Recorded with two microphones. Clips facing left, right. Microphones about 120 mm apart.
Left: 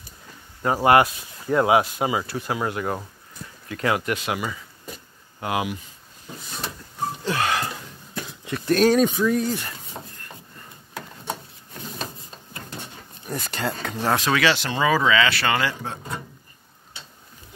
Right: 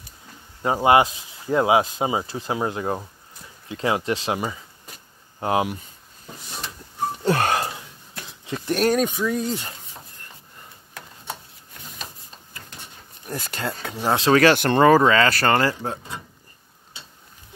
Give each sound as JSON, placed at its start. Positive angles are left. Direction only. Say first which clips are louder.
{"t": 0.8, "sound": "speech", "louder": "even", "side_deg": -20}
{"t": 7.2, "sound": "a sound", "louder": "right 4 dB", "side_deg": -40}
{"t": 8.5, "sound": "speech", "louder": "left 3 dB", "side_deg": -25}
{"t": 8.7, "sound": "speech", "louder": "left 3 dB", "side_deg": -5}
{"t": 9.3, "sound": "speech", "louder": "left 2 dB", "side_deg": -25}
{"t": 13.3, "sound": "speech", "louder": "left 1 dB", "side_deg": 0}
{"t": 14.3, "sound": "speech", "louder": "right 6 dB", "side_deg": -50}